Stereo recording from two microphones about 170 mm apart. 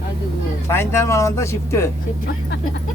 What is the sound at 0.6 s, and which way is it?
Speech, 15° left (ahead or behind).